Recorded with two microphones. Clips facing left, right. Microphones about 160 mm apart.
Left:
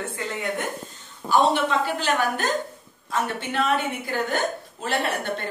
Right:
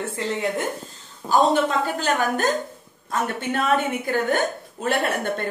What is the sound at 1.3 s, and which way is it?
A woman's voice, 40° right (ahead or behind).